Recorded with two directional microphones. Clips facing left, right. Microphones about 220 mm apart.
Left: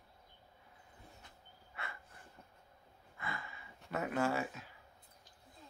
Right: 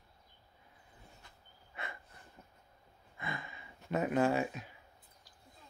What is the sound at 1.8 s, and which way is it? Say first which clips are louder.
Snort: right 3 dB; 20° right (ahead or behind).